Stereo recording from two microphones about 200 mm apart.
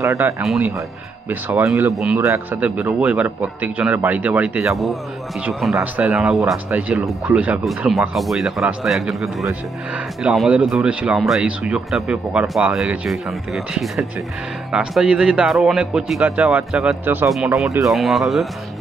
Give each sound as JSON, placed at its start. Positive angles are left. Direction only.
{"t": 0.0, "sound": "a man's voice", "side_deg": -15}
{"t": 2.0, "sound": "a man's voice", "side_deg": 0}